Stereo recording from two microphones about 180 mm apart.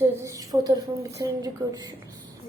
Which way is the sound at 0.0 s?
15° right (ahead or behind).